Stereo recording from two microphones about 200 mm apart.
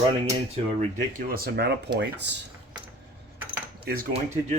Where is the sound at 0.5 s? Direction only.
35° right (ahead or behind).